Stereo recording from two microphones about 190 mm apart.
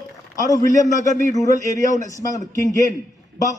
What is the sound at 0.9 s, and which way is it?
Speech, 40° left (ahead or behind).